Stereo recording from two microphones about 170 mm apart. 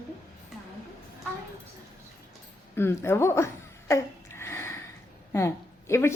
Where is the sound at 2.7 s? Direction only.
15° left (ahead or behind).